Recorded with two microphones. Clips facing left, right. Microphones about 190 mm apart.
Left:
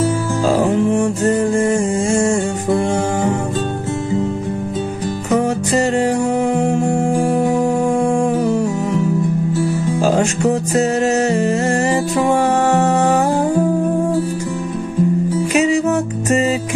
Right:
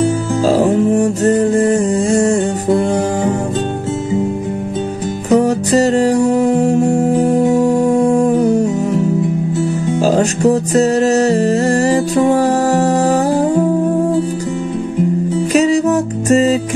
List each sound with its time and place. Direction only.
0.5 s music: 40° right (ahead or behind)
5.3 s music: 40° right (ahead or behind)
10.0 s music: 40° right (ahead or behind)
15.5 s music: 35° right (ahead or behind)